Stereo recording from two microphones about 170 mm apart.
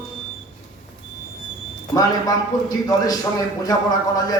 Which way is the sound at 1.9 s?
20° left (ahead or behind).